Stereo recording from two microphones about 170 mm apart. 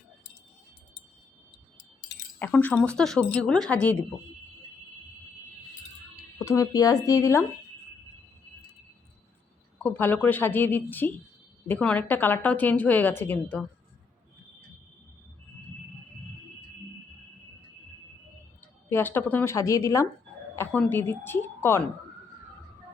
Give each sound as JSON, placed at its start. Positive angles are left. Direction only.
{"t": 2.4, "sound": "a woman's voice", "side_deg": 10}
{"t": 6.4, "sound": "speech", "side_deg": 15}
{"t": 9.8, "sound": "a woman's voice", "side_deg": 10}
{"t": 18.9, "sound": "a woman's voice", "side_deg": 10}